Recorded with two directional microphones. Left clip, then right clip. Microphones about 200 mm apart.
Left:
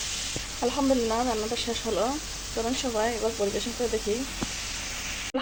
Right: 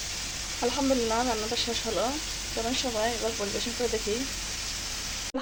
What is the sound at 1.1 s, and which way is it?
Speech, 10° left (ahead or behind).